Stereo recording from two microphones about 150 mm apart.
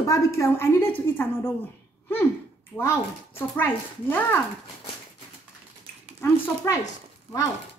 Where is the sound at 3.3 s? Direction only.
15° left (ahead or behind).